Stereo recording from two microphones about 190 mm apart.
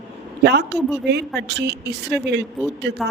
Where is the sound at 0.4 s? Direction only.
60° right (ahead or behind).